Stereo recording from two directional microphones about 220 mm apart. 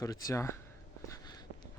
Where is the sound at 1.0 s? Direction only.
15° left (ahead or behind).